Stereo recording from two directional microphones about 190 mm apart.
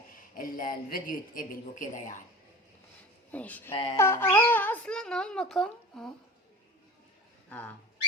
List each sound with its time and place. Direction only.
0.3 s a man's voice: 45° left (ahead or behind)
3.3 s speech: 10° left (ahead or behind)